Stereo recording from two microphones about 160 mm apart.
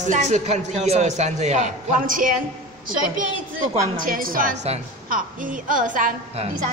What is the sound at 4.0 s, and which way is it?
A woman's voice, 60° right (ahead or behind).